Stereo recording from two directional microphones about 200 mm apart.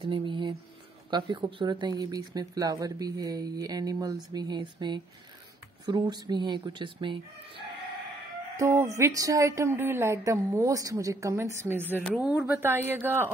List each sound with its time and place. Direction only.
0.0 s speech: 25° right (ahead or behind)
8.5 s a woman's voice: 15° right (ahead or behind)